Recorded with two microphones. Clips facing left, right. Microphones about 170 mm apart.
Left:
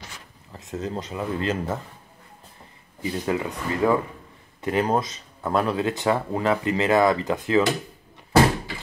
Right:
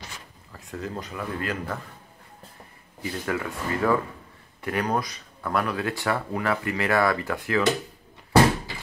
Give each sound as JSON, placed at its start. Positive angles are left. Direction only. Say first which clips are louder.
{"t": 0.5, "sound": "speech", "louder": "left 4 dB", "side_deg": 20}
{"t": 3.0, "sound": "speech", "louder": "left 3 dB", "side_deg": 20}